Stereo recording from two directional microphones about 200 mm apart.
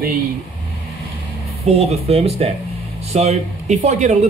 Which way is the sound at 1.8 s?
30° right (ahead or behind).